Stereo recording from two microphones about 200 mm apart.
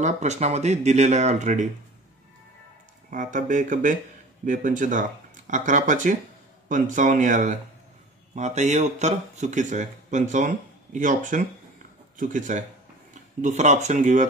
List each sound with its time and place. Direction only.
0.0 s speech: 35° right (ahead or behind)
3.1 s speech: 40° right (ahead or behind)